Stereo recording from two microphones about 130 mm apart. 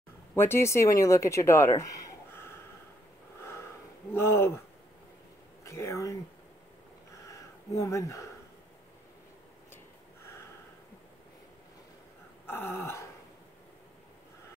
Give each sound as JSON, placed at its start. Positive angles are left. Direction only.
{"t": 0.4, "sound": "speech", "side_deg": 20}
{"t": 4.1, "sound": "speech", "side_deg": 20}
{"t": 5.7, "sound": "speech", "side_deg": 20}
{"t": 7.2, "sound": "a sound", "side_deg": 25}
{"t": 12.4, "sound": "gasp", "side_deg": 15}